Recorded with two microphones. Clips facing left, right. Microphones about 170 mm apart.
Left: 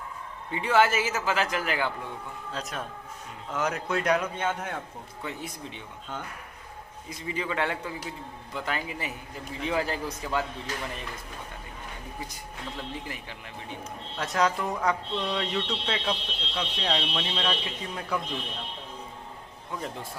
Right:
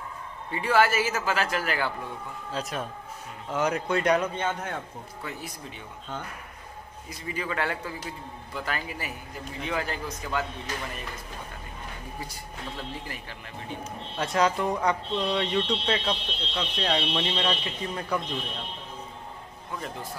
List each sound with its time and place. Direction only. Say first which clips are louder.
0.5 s a man's voice: even; 20° left (ahead or behind)
2.5 s speech: right 4 dB; centre (ahead or behind)
7.1 s speech: left 1 dB; 20° left (ahead or behind)
14.1 s speech: right 2 dB; centre (ahead or behind)